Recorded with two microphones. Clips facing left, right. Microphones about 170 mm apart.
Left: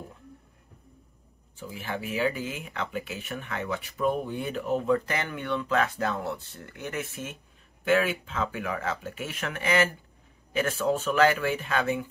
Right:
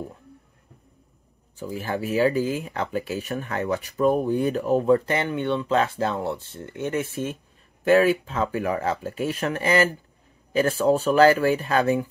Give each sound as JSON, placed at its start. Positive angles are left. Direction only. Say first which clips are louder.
{"t": 1.6, "sound": "speech", "louder": "right 6 dB", "side_deg": -40}